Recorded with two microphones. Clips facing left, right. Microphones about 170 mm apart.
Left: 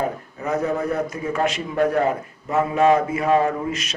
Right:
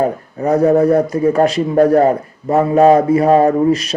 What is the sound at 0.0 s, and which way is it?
A man's voice, 35° right (ahead or behind).